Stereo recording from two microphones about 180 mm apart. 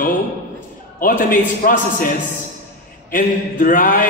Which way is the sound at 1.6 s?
50° left (ahead or behind).